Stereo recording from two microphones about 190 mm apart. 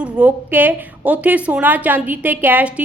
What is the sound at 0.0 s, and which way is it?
A woman's voice, 5° right (ahead or behind).